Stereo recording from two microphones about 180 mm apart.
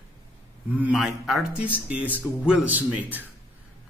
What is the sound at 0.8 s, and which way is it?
A man's voice, centre (ahead or behind).